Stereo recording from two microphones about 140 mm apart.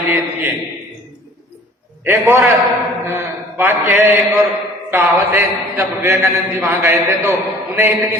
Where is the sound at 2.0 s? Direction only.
15° right (ahead or behind).